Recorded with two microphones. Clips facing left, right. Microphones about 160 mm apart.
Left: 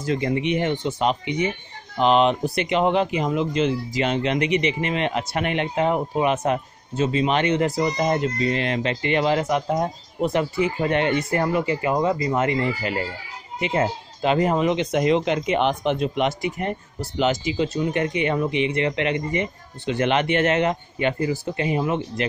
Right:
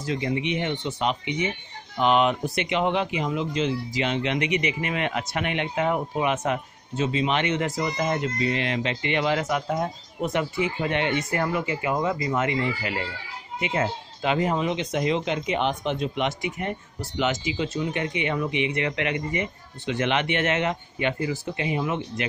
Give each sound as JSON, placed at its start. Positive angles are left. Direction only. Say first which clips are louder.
{"t": 0.0, "sound": "speech", "louder": "left 4 dB", "side_deg": 50}
{"t": 16.2, "sound": "speech", "louder": "left 4 dB", "side_deg": 40}